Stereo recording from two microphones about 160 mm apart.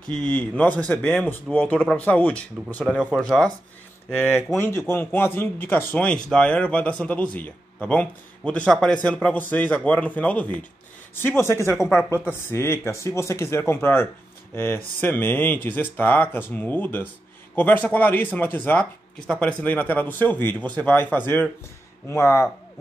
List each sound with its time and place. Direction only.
0.1 s a man's voice: 10° left (ahead or behind)
2.8 s a man's voice: 5° right (ahead or behind); by 11.7 s 15° left (ahead or behind)
11.7 s speech: centre (ahead or behind)
12.3 s a man's voice: 15° left (ahead or behind)